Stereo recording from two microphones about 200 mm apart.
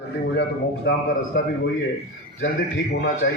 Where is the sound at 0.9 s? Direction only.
55° left (ahead or behind).